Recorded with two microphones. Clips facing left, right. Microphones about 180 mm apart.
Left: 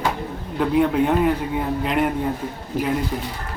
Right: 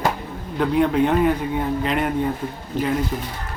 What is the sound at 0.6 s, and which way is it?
A man's voice, 5° left (ahead or behind).